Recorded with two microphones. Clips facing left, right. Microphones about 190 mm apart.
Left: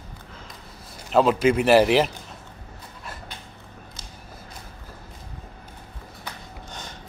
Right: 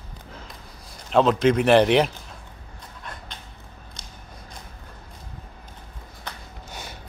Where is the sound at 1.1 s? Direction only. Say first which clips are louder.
Even; 5° left (ahead or behind).